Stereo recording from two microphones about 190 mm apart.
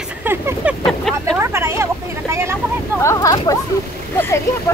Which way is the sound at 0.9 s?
Centre (ahead or behind).